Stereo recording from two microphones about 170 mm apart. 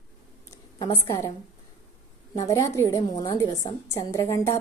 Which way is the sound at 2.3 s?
20° left (ahead or behind).